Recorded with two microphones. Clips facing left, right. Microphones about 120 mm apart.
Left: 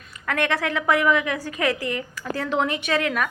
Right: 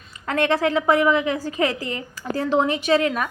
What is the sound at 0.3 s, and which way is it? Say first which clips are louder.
A woman's voice: right 4 dB; 25° right (ahead or behind).